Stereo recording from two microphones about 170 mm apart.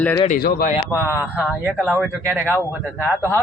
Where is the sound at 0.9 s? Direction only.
15° left (ahead or behind).